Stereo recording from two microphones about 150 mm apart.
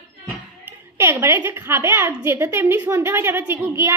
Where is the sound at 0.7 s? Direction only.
15° right (ahead or behind).